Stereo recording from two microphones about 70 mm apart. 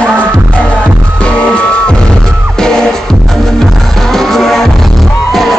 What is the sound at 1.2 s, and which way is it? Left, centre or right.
Music, centre.